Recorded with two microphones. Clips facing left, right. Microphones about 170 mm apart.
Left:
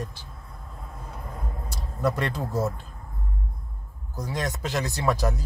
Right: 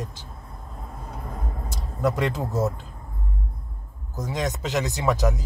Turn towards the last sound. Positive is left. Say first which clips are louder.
# right 2 dB
turn(degrees=-15)  # may be behind; listen again after turning